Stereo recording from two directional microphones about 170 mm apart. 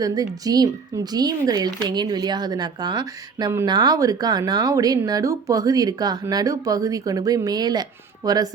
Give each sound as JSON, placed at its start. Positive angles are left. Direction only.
{"t": 0.0, "sound": "speech", "side_deg": -20}